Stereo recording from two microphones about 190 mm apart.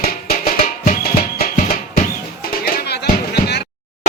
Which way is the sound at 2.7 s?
60° left (ahead or behind).